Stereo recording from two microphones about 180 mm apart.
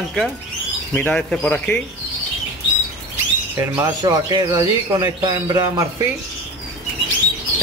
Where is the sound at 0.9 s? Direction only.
5° left (ahead or behind).